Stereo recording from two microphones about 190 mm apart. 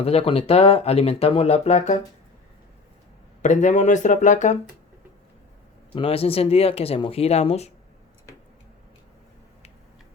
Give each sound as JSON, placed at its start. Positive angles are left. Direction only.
{"t": 0.0, "sound": "speech", "side_deg": 30}
{"t": 3.4, "sound": "speech", "side_deg": 40}
{"t": 5.9, "sound": "speech", "side_deg": 30}